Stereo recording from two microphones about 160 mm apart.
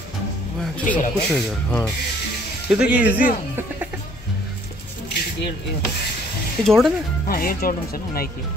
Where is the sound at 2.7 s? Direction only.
5° right (ahead or behind).